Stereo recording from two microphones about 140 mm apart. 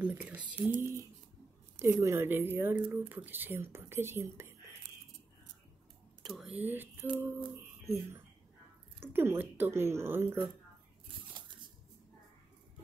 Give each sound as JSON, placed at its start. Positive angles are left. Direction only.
{"t": 0.0, "sound": "speech", "side_deg": -10}
{"t": 6.2, "sound": "speech", "side_deg": 0}